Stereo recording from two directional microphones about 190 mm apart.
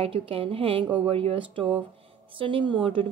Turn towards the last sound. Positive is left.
turn(degrees=-25)  # may be behind; listen again after turning